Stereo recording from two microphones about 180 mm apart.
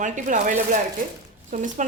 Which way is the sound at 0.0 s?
45° right (ahead or behind).